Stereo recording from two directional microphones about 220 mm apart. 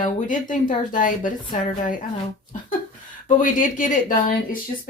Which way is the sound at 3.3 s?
35° left (ahead or behind).